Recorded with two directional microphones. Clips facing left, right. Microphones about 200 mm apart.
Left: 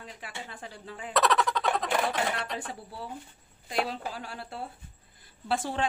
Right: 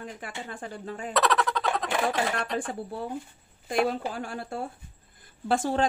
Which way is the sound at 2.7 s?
50° right (ahead or behind).